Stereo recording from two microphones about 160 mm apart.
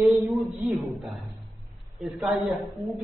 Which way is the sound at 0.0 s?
Centre (ahead or behind).